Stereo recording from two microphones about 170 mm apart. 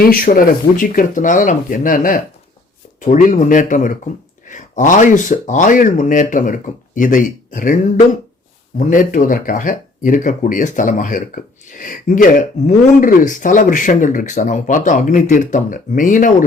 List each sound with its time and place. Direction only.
0.0 s speech: 55° left (ahead or behind)